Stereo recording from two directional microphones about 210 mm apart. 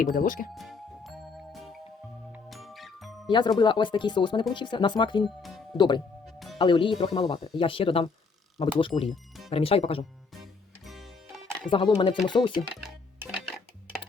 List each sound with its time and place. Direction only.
0.0 s speech: 40° left (ahead or behind)
0.5 s music: centre (ahead or behind)
3.2 s speech: 20° left (ahead or behind)
5.2 s speech: centre (ahead or behind)
5.7 s speech: 20° left (ahead or behind)
10.8 s music: centre (ahead or behind)
11.7 s speech: 25° left (ahead or behind)
12.7 s music: 5° right (ahead or behind)